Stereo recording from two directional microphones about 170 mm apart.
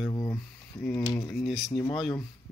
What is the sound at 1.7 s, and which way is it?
Speech, 30° left (ahead or behind).